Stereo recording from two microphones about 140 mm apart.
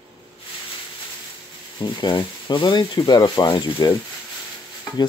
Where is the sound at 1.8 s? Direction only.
30° left (ahead or behind).